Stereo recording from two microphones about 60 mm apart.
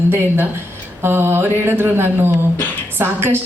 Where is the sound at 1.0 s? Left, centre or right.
Right.